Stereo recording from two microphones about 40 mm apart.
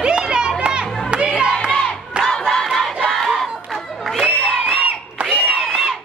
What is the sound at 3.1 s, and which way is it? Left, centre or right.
Battle cry, centre.